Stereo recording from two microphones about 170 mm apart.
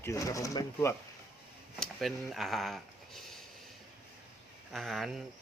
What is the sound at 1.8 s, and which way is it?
Speech, centre (ahead or behind).